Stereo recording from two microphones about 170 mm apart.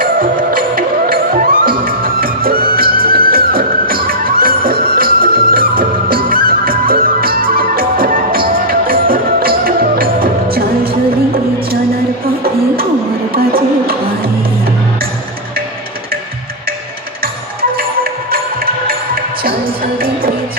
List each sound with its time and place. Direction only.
0.0 s music: 55° right (ahead or behind)
12.2 s music: 60° right (ahead or behind)
17.6 s music: 60° right (ahead or behind)